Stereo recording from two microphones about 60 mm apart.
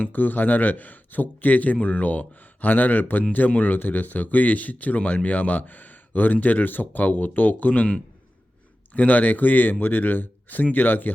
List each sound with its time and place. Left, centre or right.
0.0 s speech: left